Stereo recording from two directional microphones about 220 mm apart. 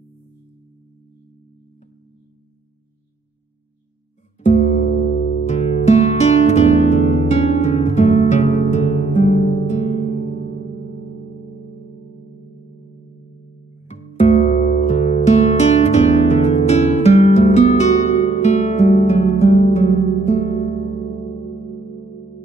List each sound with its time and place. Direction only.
4.5 s music: 30° left (ahead or behind)
13.8 s music: 30° left (ahead or behind)